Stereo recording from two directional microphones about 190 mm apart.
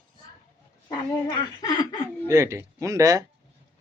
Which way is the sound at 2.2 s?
15° right (ahead or behind).